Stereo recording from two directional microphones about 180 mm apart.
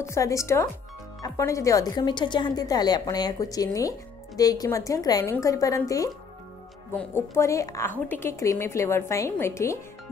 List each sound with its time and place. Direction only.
0.0 s a woman's voice: 15° left (ahead or behind)